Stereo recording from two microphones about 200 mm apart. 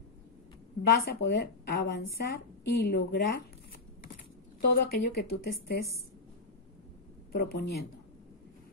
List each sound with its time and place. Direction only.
0.8 s speech: 50° left (ahead or behind)
4.6 s speech: 50° left (ahead or behind)
7.3 s speech: 50° left (ahead or behind)